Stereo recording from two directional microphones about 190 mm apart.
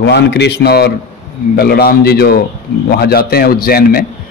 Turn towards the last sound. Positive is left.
turn(degrees=50)  # may be behind; listen again after turning